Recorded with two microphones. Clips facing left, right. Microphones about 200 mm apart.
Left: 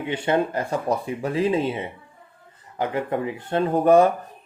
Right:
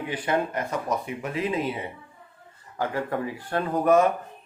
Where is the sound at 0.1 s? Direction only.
25° left (ahead or behind).